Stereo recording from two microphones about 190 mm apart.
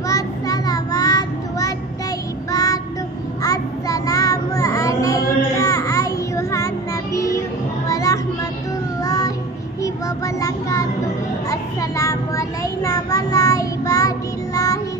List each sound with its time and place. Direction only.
0.1 s child singing: 20° left (ahead or behind)
7.9 s child singing: 20° left (ahead or behind)